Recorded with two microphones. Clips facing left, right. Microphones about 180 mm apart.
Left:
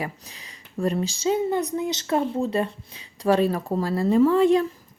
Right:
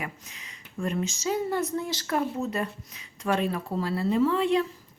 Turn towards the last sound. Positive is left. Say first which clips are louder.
# left 6 dB
turn(degrees=45)  # may be behind; listen again after turning